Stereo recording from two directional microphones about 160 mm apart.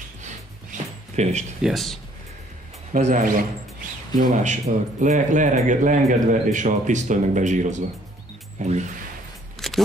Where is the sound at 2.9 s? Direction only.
50° right (ahead or behind).